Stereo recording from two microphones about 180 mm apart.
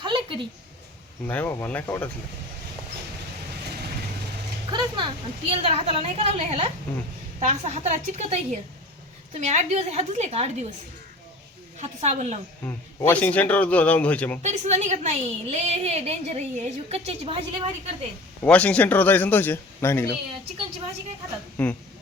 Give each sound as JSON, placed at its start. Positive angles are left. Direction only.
{"t": 0.0, "sound": "a sound", "side_deg": -25}
{"t": 1.3, "sound": "a man's voice", "side_deg": 10}
{"t": 4.7, "sound": "a woman's voice", "side_deg": -25}
{"t": 11.8, "sound": "a woman's voice", "side_deg": -40}
{"t": 12.6, "sound": "a man's voice", "side_deg": 10}
{"t": 14.4, "sound": "a woman's voice", "side_deg": -40}
{"t": 18.4, "sound": "a man's voice", "side_deg": 5}
{"t": 21.6, "sound": "a man's voice", "side_deg": 5}